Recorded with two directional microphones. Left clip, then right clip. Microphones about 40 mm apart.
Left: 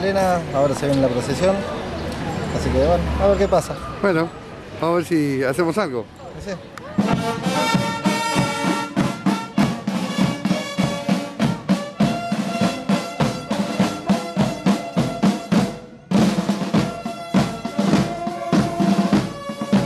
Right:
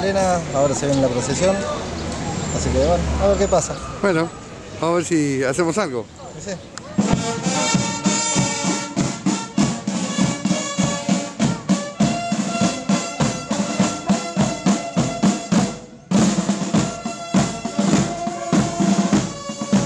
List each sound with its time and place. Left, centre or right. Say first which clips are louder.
0.0 s speech: even; centre
7.0 s music: even; centre
8.3 s music: left 1 dB; left
9.6 s music: even; left
9.9 s music: right 1 dB; centre
15.6 s drum: right 1 dB; centre
19.6 s music: even; centre